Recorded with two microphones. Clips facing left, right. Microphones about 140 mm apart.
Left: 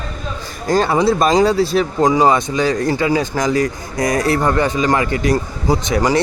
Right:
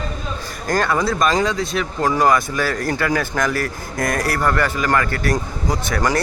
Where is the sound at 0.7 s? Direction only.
25° left (ahead or behind).